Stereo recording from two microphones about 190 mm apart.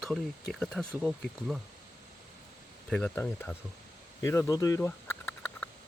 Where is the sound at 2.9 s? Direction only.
5° left (ahead or behind).